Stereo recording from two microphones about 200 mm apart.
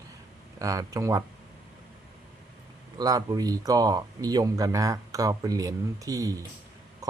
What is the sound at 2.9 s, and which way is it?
Speech, 20° right (ahead or behind).